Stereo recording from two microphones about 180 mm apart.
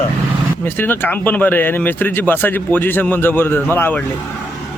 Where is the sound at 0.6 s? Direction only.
10° left (ahead or behind).